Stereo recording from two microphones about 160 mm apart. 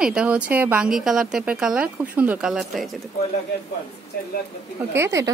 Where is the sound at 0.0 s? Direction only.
5° right (ahead or behind).